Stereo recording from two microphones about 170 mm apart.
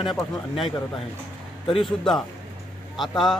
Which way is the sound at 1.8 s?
Centre (ahead or behind).